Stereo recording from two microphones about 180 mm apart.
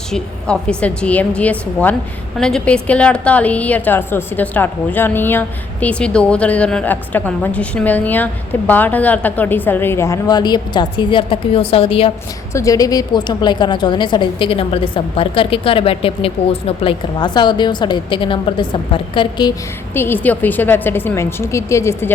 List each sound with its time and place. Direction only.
0.1 s a woman's voice: 5° left (ahead or behind); by 12.1 s 30° left (ahead or behind)
12.5 s a woman's voice: 20° left (ahead or behind)
19.9 s a woman's voice: 10° left (ahead or behind)